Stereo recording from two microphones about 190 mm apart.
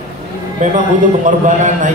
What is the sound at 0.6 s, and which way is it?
A man's voice, 40° right (ahead or behind).